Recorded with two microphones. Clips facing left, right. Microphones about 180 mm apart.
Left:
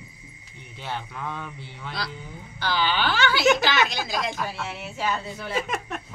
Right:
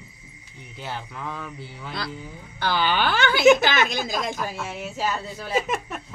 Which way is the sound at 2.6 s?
55° right (ahead or behind).